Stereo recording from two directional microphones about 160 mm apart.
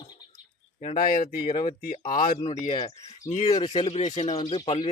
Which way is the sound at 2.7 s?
40° left (ahead or behind).